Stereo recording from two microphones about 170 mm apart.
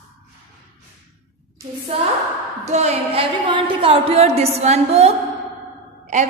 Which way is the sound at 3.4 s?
30° right (ahead or behind).